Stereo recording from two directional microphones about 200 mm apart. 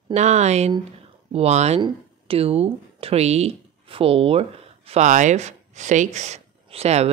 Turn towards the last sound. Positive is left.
turn(degrees=-30)  # may be behind; listen again after turning